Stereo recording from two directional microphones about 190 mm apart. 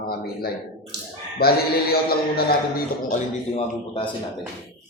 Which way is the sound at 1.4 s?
55° left (ahead or behind).